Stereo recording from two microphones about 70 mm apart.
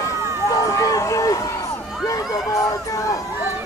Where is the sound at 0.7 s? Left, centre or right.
Left.